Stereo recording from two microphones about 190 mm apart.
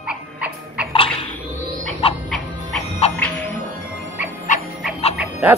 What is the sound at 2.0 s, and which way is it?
Music, 30° left (ahead or behind).